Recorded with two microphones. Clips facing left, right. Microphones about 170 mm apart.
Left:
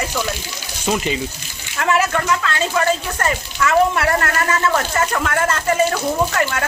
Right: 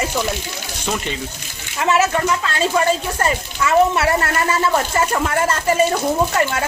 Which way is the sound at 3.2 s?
25° right (ahead or behind).